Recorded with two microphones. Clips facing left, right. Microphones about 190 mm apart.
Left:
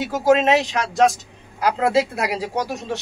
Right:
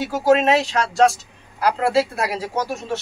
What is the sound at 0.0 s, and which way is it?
Speech, 20° left (ahead or behind).